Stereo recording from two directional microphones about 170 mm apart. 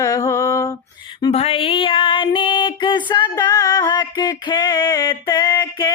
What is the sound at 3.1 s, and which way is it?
Music, 20° left (ahead or behind).